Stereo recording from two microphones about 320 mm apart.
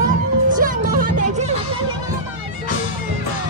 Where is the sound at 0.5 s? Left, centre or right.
Right.